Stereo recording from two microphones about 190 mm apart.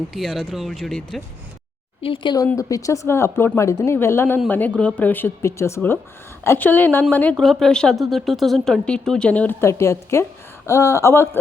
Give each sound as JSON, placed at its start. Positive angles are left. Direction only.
{"t": 0.1, "sound": "speech", "side_deg": 0}
{"t": 2.0, "sound": "speech", "side_deg": 25}